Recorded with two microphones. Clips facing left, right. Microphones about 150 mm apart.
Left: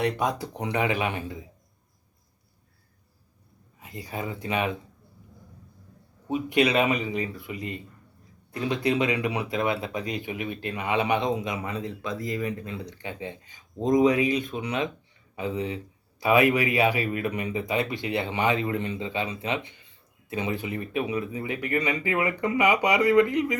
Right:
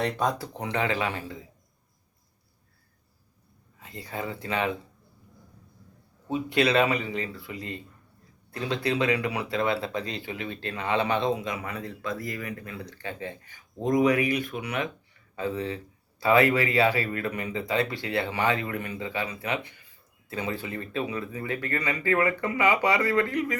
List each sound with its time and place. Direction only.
0.0 s speech: 15° left (ahead or behind)
3.8 s speech: 20° left (ahead or behind)
6.2 s speech: 15° left (ahead or behind)